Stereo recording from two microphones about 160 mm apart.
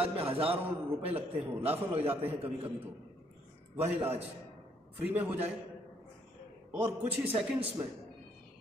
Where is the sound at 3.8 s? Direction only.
15° right (ahead or behind).